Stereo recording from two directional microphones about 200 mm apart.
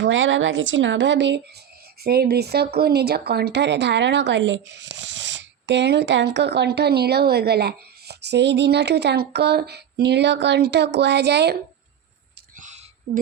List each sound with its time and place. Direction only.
0.0 s speech: 70° right (ahead or behind)
2.0 s a woman's voice: 50° right (ahead or behind)
12.5 s a sound: 35° right (ahead or behind)